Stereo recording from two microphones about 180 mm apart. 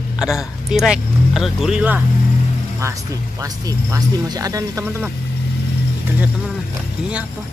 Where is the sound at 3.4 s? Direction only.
20° right (ahead or behind).